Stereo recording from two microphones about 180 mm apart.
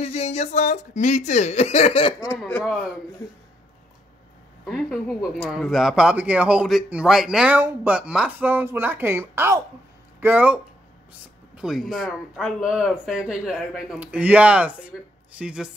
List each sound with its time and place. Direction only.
0.0 s speech: 35° left (ahead or behind)
2.3 s speech: 5° left (ahead or behind)
4.6 s speech: centre (ahead or behind)